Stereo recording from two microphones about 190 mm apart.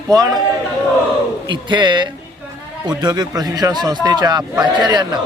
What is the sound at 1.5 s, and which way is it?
Speech, 25° right (ahead or behind).